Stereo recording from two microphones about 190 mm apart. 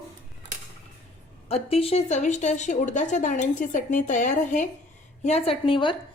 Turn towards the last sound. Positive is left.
turn(degrees=25)  # may be behind; listen again after turning